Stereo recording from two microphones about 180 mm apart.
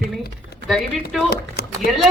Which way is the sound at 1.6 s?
60° left (ahead or behind).